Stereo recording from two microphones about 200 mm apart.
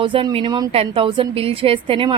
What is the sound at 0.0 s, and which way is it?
A woman's voice, 25° right (ahead or behind).